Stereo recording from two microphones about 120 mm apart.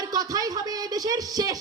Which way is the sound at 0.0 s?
30° right (ahead or behind).